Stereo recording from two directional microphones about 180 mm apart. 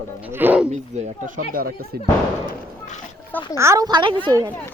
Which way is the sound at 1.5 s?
55° right (ahead or behind).